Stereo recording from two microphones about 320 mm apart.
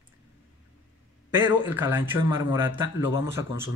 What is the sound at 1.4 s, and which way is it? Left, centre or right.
A man's voice, centre.